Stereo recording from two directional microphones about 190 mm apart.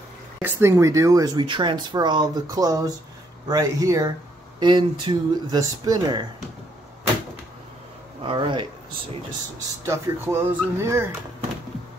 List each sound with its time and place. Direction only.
0.4 s speech: 10° right (ahead or behind)
8.2 s speech: 25° right (ahead or behind)
9.8 s speech: 10° right (ahead or behind)